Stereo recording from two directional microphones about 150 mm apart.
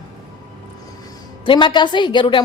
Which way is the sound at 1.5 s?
30° left (ahead or behind).